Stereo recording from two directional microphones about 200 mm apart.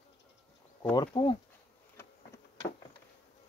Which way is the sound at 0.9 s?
25° left (ahead or behind).